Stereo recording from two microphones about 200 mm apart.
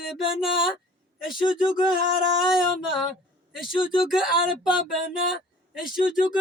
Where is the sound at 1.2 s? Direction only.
5° right (ahead or behind).